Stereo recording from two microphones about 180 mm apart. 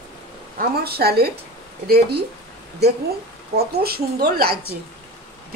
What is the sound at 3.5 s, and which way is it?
A woman's voice, 60° right (ahead or behind).